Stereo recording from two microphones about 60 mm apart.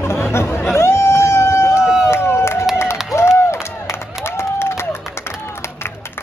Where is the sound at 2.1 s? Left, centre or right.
Left.